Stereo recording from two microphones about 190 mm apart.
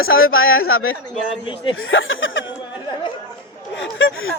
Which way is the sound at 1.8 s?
90° left.